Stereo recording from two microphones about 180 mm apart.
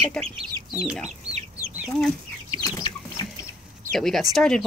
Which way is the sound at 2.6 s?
20° left (ahead or behind).